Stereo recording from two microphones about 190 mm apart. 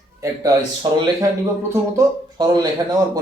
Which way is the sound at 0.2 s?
20° right (ahead or behind).